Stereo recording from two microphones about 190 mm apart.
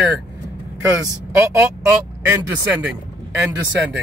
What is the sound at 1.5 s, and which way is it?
Speech, 15° right (ahead or behind).